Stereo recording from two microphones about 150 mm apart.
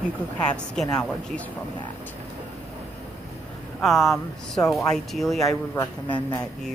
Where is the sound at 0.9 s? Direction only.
5° left (ahead or behind).